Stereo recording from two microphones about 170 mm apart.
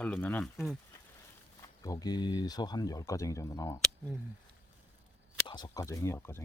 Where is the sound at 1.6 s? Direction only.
20° left (ahead or behind).